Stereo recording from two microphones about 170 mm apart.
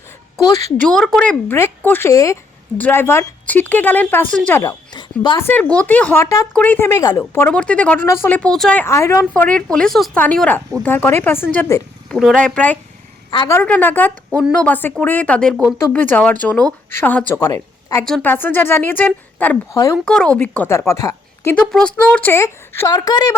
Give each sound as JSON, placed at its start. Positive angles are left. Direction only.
{"t": 0.8, "sound": "speech", "side_deg": 5}
{"t": 4.6, "sound": "a sound", "side_deg": 25}
{"t": 5.4, "sound": "speech", "side_deg": 10}
{"t": 7.2, "sound": "a woman's voice", "side_deg": 10}
{"t": 18.0, "sound": "speech", "side_deg": 5}
{"t": 20.1, "sound": "speech", "side_deg": 5}
{"t": 21.5, "sound": "speech", "side_deg": 5}